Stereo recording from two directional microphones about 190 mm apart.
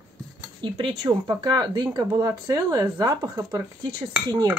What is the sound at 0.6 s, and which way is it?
Speech, 20° right (ahead or behind).